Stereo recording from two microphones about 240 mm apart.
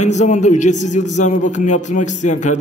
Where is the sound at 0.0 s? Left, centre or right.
Left.